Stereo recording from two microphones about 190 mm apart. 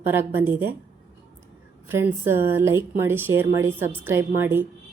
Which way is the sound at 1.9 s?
10° right (ahead or behind).